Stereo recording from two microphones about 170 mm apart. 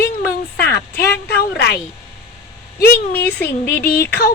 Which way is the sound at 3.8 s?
65° left (ahead or behind).